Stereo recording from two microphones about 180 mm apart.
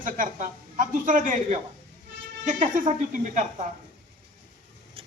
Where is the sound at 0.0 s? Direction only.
50° right (ahead or behind).